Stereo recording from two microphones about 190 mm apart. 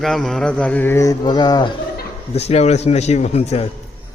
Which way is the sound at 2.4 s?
35° left (ahead or behind).